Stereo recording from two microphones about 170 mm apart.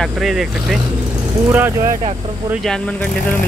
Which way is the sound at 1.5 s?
15° right (ahead or behind).